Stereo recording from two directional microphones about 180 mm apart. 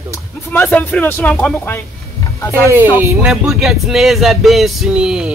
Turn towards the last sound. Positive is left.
turn(degrees=-5)  # may be behind; listen again after turning